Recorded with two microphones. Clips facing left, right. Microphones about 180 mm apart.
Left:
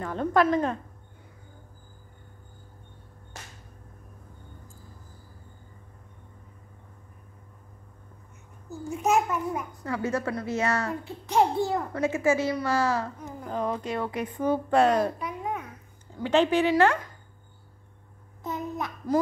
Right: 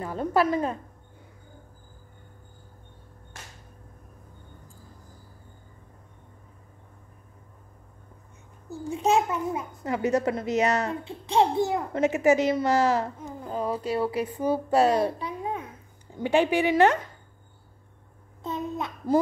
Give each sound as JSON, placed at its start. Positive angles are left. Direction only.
{"t": 0.0, "sound": "a woman's voice", "side_deg": -10}
{"t": 8.6, "sound": "a child's voice", "side_deg": -30}
{"t": 13.5, "sound": "speech", "side_deg": -5}
{"t": 15.0, "sound": "a sound", "side_deg": -30}
{"t": 16.2, "sound": "speech", "side_deg": -10}
{"t": 18.4, "sound": "child singing", "side_deg": -25}